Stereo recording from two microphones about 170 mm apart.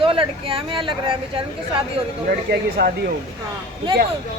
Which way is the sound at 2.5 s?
65° right (ahead or behind).